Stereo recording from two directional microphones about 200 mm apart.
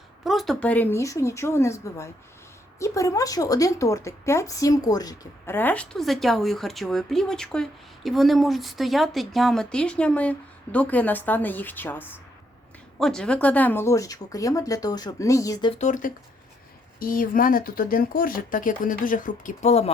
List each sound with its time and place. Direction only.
0.3 s speech: centre (ahead or behind); by 15.7 s 15° left (ahead or behind)
15.8 s speech: 40° left (ahead or behind)